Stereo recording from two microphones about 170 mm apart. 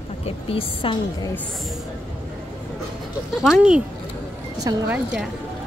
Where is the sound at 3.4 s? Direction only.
5° right (ahead or behind).